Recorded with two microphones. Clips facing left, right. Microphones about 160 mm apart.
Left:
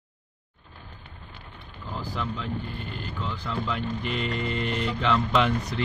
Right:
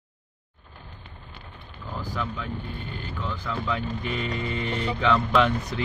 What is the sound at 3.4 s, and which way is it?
Speech, centre (ahead or behind).